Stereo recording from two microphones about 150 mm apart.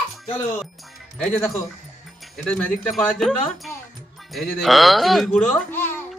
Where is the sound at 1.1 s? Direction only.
5° left (ahead or behind).